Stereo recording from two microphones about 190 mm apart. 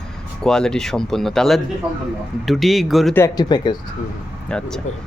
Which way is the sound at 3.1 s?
15° left (ahead or behind).